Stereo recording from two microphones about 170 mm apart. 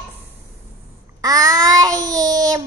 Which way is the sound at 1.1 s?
20° right (ahead or behind).